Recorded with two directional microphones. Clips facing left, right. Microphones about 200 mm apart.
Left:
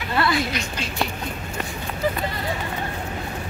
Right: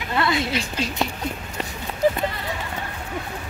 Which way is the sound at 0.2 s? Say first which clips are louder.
Even; 25° right (ahead or behind).